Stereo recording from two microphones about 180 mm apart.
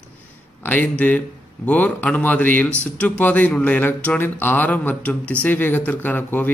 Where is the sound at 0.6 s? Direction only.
10° left (ahead or behind).